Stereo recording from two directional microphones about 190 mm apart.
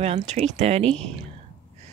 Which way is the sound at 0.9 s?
5° left (ahead or behind).